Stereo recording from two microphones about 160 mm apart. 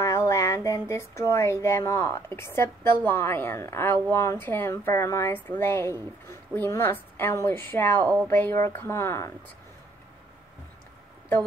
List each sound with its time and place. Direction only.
0.0 s speech: 20° left (ahead or behind)